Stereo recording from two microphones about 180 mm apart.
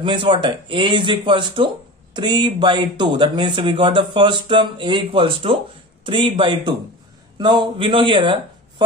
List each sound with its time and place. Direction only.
0.0 s speech: 25° right (ahead or behind)